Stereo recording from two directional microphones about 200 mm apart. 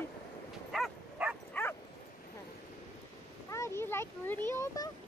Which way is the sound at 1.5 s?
10° left (ahead or behind).